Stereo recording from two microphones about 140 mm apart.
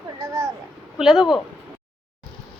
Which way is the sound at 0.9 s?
5° right (ahead or behind).